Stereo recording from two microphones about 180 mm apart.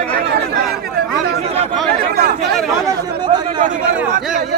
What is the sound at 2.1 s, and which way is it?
Speech, 55° right (ahead or behind).